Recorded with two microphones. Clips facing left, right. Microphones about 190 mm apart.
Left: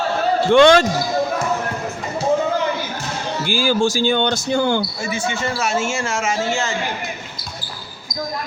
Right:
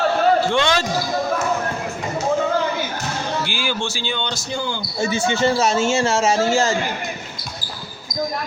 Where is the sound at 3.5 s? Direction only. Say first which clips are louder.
Left 7 dB; 40° left (ahead or behind).